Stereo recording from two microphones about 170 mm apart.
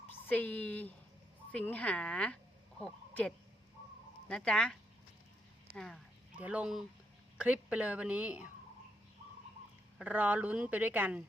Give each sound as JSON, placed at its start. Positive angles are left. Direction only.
{"t": 0.3, "sound": "speech", "side_deg": 10}
{"t": 10.0, "sound": "speech", "side_deg": -10}